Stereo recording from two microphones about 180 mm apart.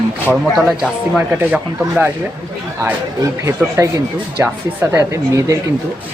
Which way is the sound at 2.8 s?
15° right (ahead or behind).